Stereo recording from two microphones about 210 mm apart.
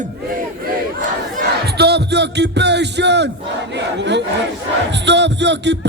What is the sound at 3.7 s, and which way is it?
Battle cry, 55° right (ahead or behind).